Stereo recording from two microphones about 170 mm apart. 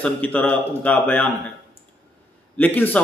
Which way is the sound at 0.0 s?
10° left (ahead or behind).